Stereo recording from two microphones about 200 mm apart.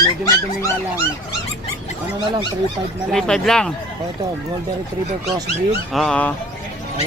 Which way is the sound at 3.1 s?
Centre (ahead or behind).